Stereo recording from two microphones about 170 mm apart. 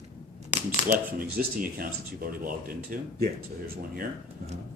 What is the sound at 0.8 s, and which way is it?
Speech, 55° right (ahead or behind).